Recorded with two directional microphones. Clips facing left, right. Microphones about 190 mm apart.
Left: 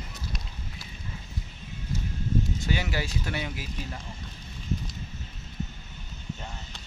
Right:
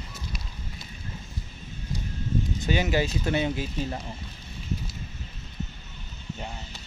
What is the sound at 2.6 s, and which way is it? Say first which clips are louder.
Speech: right 5 dB; 20° right (ahead or behind).